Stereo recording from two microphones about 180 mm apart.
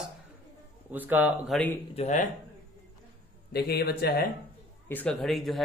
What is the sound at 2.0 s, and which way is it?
Speech, 40° left (ahead or behind).